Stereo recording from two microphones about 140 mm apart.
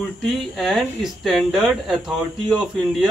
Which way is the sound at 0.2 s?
Centre (ahead or behind).